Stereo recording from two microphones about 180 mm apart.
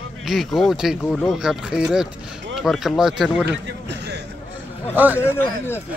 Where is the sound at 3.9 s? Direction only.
70° right (ahead or behind).